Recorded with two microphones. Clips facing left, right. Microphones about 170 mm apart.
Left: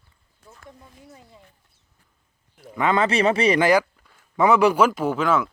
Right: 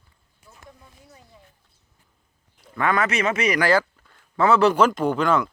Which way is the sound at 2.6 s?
20° left (ahead or behind).